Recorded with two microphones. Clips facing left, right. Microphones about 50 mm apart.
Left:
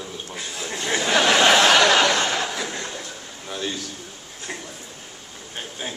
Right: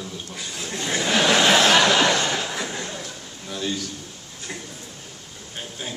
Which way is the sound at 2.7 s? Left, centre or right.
Centre.